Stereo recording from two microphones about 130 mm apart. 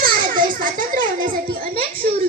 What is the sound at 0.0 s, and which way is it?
Children playing, 90° right.